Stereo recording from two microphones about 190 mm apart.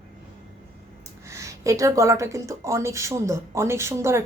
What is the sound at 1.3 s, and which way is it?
A woman's voice, 15° right (ahead or behind).